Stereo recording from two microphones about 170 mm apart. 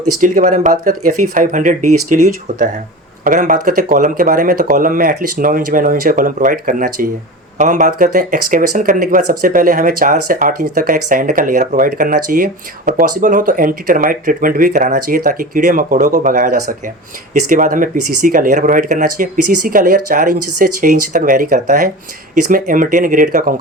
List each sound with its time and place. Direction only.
0.2 s speech: 50° right (ahead or behind)